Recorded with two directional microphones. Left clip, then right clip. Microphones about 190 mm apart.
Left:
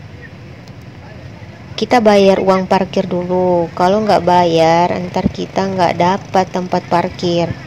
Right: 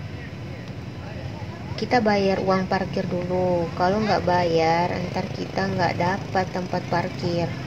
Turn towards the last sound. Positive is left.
turn(degrees=40)  # may be behind; listen again after turning